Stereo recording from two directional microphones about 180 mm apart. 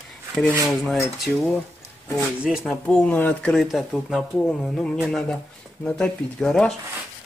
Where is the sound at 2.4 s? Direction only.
Centre (ahead or behind).